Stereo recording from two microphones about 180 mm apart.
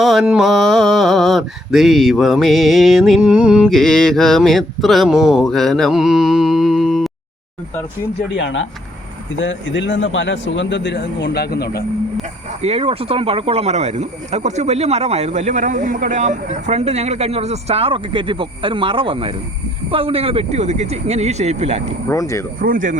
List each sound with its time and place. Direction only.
0.0 s a sound: centre (ahead or behind)
8.4 s speech: 90° left; by 11.8 s 60° left (ahead or behind)
12.6 s speech: 35° right (ahead or behind)
22.1 s speech: 15° left (ahead or behind)
22.6 s speech: 50° right (ahead or behind)